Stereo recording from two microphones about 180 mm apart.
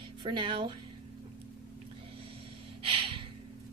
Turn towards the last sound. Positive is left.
turn(degrees=-30)  # may be behind; listen again after turning